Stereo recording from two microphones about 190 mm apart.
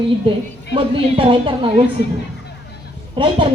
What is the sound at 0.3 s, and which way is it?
A woman's voice, 30° right (ahead or behind).